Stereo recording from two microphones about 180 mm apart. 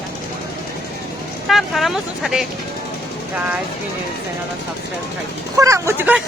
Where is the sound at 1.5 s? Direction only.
Centre (ahead or behind).